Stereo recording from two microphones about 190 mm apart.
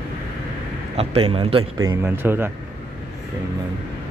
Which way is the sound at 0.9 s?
30° right (ahead or behind).